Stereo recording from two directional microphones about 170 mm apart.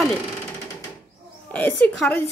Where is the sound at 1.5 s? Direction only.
10° left (ahead or behind).